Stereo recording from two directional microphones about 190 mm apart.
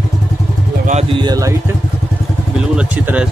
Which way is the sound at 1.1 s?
25° right (ahead or behind).